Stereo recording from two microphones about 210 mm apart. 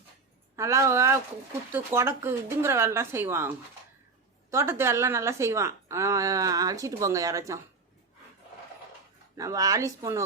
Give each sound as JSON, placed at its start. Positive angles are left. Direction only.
{"t": 0.5, "sound": "a woman's voice", "side_deg": -15}
{"t": 4.5, "sound": "a woman's voice", "side_deg": -10}
{"t": 9.3, "sound": "a woman's voice", "side_deg": -15}